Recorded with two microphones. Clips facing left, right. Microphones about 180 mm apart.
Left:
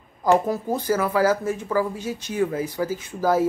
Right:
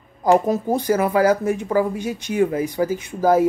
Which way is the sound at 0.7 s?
15° right (ahead or behind).